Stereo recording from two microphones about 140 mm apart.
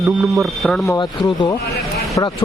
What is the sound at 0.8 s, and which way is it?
A man's voice, 25° left (ahead or behind).